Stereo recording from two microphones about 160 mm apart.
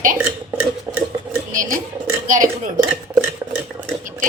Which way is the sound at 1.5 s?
55° right (ahead or behind).